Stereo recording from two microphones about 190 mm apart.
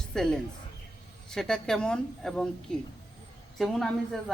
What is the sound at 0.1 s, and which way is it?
A woman's voice, 5° left (ahead or behind).